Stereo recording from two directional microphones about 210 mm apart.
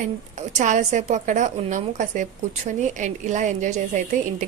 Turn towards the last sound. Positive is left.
turn(degrees=-35)  # may be behind; listen again after turning